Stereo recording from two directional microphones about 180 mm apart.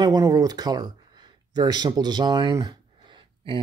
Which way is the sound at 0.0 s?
20° right (ahead or behind).